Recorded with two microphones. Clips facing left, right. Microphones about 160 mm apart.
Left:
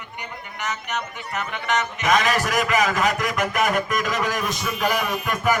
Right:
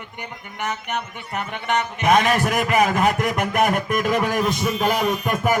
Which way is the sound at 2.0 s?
55° right (ahead or behind).